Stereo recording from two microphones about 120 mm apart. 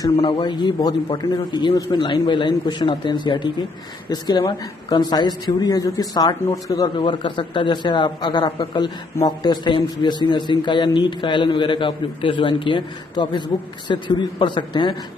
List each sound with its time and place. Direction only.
0.0 s a man's voice: 40° left (ahead or behind)
7.0 s a man's voice: 45° left (ahead or behind)